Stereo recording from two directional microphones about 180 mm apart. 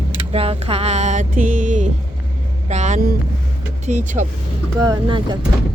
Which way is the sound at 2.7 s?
40° right (ahead or behind).